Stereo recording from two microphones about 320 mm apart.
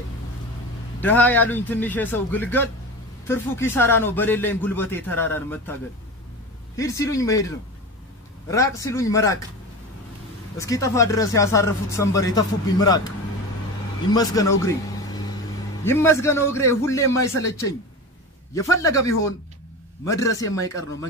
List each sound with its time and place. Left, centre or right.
1.0 s speech: centre
6.8 s speech: centre
10.6 s speech: centre
14.1 s speech: centre
15.8 s speech: centre